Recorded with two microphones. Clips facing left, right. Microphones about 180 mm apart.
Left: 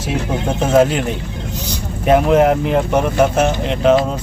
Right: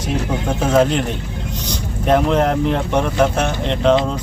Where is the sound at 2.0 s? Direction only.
5° left (ahead or behind).